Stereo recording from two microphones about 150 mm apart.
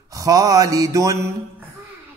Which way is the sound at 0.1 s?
25° right (ahead or behind).